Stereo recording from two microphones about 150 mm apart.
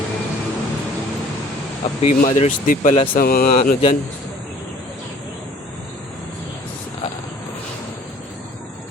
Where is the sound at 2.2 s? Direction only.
55° left (ahead or behind).